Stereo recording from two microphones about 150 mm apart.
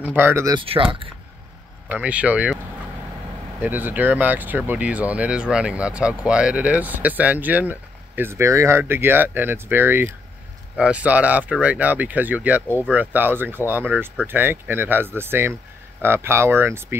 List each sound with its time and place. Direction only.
0.0 s speech: 10° right (ahead or behind)
0.6 s speech: 35° right (ahead or behind)
1.9 s speech: 10° right (ahead or behind)
3.6 s speech: 10° right (ahead or behind)